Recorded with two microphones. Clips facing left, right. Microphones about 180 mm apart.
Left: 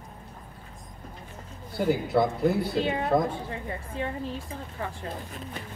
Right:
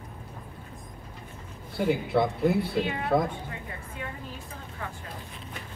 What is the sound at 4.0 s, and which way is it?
Speech, 30° left (ahead or behind).